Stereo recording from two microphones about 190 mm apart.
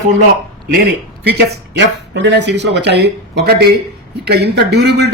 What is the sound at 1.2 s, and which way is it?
A man's voice, 60° right (ahead or behind).